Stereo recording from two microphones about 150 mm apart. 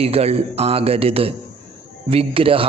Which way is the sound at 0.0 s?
40° right (ahead or behind).